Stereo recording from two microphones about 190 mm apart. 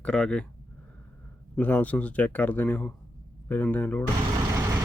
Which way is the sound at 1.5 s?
10° left (ahead or behind).